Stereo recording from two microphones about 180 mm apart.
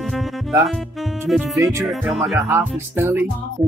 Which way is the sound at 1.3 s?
Centre (ahead or behind).